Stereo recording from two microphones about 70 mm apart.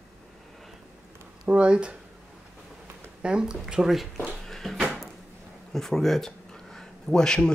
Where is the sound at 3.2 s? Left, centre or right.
Centre.